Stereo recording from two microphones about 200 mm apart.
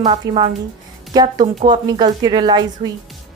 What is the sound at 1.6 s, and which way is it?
A woman's voice, 25° right (ahead or behind).